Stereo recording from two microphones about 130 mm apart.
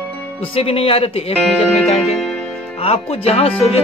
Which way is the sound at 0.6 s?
45° left (ahead or behind).